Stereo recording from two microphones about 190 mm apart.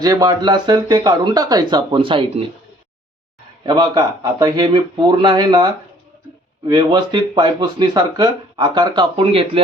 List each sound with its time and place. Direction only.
0.0 s speech: 20° right (ahead or behind)
3.7 s speech: 20° right (ahead or behind)